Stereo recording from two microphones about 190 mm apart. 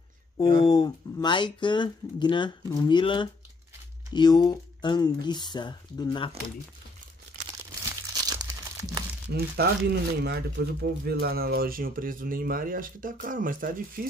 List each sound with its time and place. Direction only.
0.6 s speech: 20° left (ahead or behind)
9.3 s speech: 60° right (ahead or behind)